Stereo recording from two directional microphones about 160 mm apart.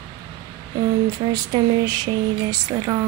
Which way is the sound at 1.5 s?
25° right (ahead or behind).